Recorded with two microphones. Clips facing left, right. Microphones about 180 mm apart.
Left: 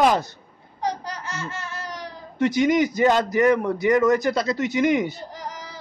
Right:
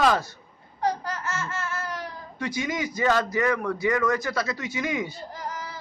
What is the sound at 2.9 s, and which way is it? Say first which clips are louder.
A man's voice: left 5 dB; 20° left (ahead or behind).